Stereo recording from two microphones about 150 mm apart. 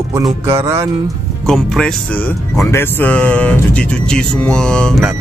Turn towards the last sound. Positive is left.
turn(degrees=5)  # may be behind; listen again after turning